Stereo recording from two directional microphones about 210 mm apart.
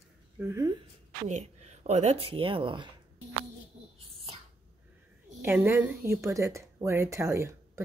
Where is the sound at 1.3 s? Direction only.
30° right (ahead or behind).